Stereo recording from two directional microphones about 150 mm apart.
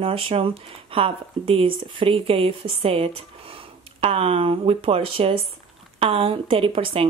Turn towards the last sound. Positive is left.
turn(degrees=-35)  # may be behind; listen again after turning